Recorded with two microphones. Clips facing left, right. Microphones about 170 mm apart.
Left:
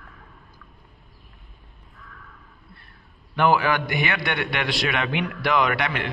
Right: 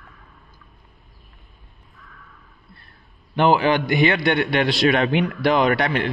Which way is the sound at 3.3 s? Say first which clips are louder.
Right 3 dB; 25° right (ahead or behind).